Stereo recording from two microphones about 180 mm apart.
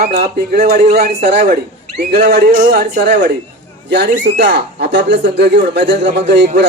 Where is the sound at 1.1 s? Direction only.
70° right (ahead or behind).